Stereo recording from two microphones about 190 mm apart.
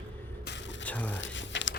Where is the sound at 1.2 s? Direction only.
75° left (ahead or behind).